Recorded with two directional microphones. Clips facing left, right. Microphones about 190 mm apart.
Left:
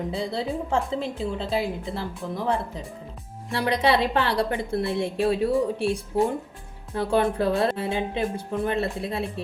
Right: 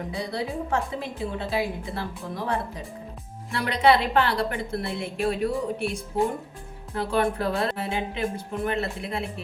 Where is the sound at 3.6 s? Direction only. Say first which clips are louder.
Right 1 dB; 30° left (ahead or behind).